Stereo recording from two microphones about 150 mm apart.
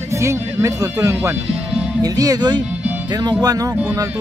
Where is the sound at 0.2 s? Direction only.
20° right (ahead or behind).